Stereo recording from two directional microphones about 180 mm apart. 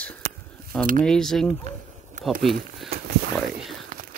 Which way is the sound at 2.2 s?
45° right (ahead or behind).